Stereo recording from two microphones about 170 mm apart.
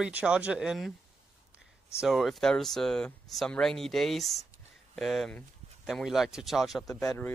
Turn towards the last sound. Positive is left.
turn(degrees=10)  # may be behind; listen again after turning